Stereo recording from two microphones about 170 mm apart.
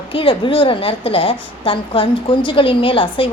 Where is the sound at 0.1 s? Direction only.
30° left (ahead or behind).